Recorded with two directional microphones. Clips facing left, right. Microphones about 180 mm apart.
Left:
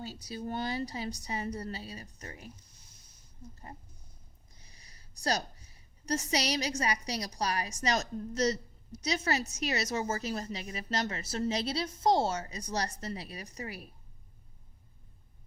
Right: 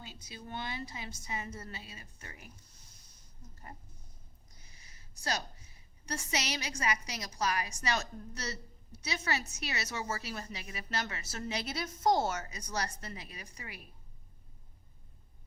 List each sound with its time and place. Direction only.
0.0 s a woman's voice: 40° left (ahead or behind)
3.5 s speech: 25° left (ahead or behind)
4.6 s a sound: 35° left (ahead or behind)
6.1 s a woman's voice: 35° left (ahead or behind)